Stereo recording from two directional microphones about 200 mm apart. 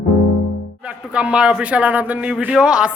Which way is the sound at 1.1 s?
5° right (ahead or behind).